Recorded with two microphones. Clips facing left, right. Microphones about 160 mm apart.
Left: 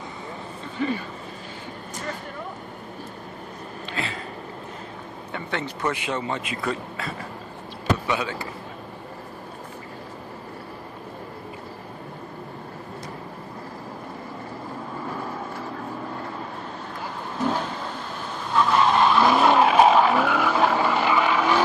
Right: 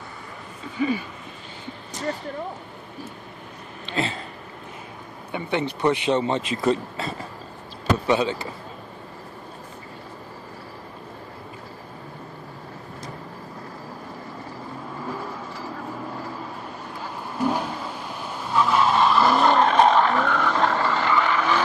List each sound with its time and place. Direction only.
0.7 s speech: 5° right (ahead or behind)
3.9 s a sound: 30° right (ahead or behind)
5.3 s speech: 20° right (ahead or behind)
8.1 s speech: 25° right (ahead or behind)
17.4 s vehicle: 10° right (ahead or behind); by 21.6 s 10° left (ahead or behind)